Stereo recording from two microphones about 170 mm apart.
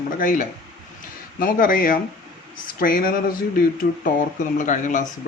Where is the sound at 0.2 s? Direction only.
50° left (ahead or behind).